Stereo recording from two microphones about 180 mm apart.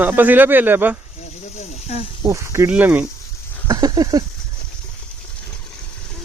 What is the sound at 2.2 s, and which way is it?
Speech, 15° right (ahead or behind).